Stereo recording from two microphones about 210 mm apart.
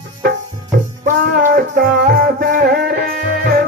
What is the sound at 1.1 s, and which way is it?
Music, 40° right (ahead or behind).